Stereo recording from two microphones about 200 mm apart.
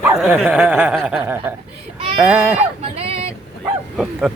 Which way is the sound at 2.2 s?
10° right (ahead or behind).